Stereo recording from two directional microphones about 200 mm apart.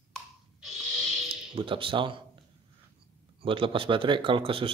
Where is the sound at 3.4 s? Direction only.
25° right (ahead or behind).